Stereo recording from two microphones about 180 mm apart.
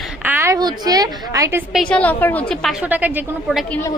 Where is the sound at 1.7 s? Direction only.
5° left (ahead or behind).